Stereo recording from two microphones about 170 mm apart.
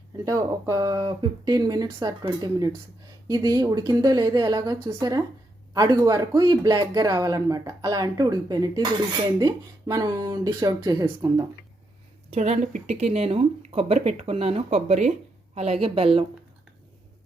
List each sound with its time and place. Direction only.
0.3 s speech: 20° right (ahead or behind)
12.3 s speech: 45° right (ahead or behind)